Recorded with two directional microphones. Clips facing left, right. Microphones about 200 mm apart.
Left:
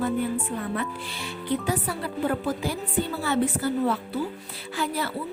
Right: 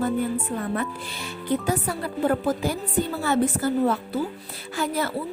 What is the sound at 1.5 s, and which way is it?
A woman's voice, 45° right (ahead or behind).